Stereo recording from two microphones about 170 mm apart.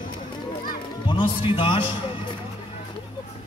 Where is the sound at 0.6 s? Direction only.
30° left (ahead or behind).